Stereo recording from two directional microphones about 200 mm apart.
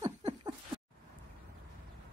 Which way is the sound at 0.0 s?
20° right (ahead or behind).